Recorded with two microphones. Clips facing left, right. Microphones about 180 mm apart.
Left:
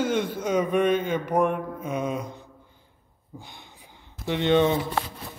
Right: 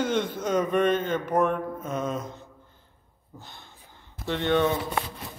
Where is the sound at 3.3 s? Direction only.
15° left (ahead or behind).